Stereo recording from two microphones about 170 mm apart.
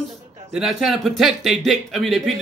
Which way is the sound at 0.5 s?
Centre (ahead or behind).